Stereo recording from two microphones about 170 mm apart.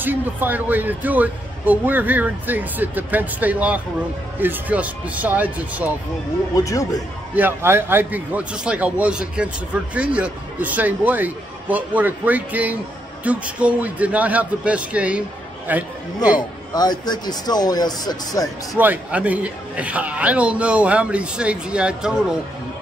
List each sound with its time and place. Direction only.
0.0 s speech: 10° right (ahead or behind)
6.5 s speech: 20° left (ahead or behind)
7.3 s speech: 10° right (ahead or behind)
16.7 s speech: 25° left (ahead or behind)
18.8 s speech: 10° right (ahead or behind)